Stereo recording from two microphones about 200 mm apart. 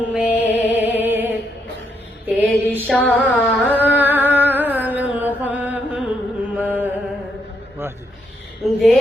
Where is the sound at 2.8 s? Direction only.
5° left (ahead or behind).